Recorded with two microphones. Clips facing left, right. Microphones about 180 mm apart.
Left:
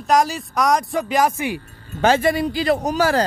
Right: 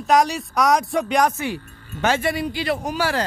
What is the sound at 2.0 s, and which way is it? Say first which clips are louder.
A man's voice: left 4 dB; 35° left (ahead or behind).